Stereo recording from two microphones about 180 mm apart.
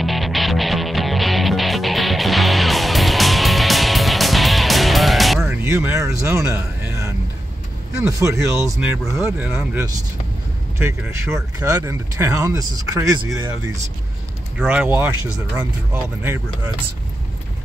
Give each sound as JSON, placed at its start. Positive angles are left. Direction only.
{"t": 0.0, "sound": "music", "side_deg": 0}
{"t": 5.4, "sound": "a sound", "side_deg": -15}
{"t": 8.2, "sound": "speech", "side_deg": -15}
{"t": 14.6, "sound": "speech", "side_deg": -5}